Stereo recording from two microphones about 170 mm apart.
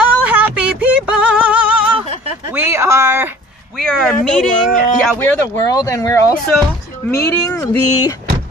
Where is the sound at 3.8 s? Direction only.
5° left (ahead or behind).